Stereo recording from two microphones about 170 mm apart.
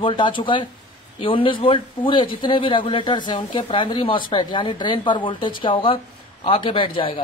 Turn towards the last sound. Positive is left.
turn(degrees=30)  # may be behind; listen again after turning